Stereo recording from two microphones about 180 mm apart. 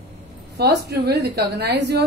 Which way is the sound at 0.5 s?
65° right (ahead or behind).